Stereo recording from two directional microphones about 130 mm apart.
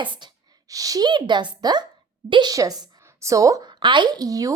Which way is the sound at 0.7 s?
25° right (ahead or behind).